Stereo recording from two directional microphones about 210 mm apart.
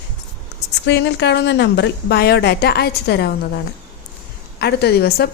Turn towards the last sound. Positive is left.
turn(degrees=50)  # may be behind; listen again after turning